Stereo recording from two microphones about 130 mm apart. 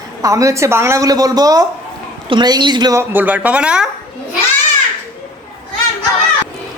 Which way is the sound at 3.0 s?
15° right (ahead or behind).